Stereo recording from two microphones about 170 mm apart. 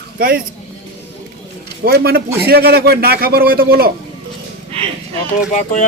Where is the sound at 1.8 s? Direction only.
65° right (ahead or behind).